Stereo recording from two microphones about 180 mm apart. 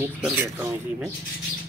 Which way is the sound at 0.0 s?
10° right (ahead or behind).